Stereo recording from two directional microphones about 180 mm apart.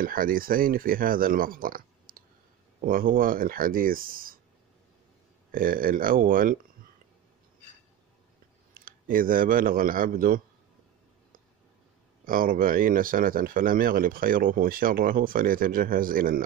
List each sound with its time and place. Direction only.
0.0 s speech: 50° right (ahead or behind)
5.5 s speech: 50° right (ahead or behind)
8.7 s a man's voice: 50° right (ahead or behind)
12.3 s speech: 50° right (ahead or behind)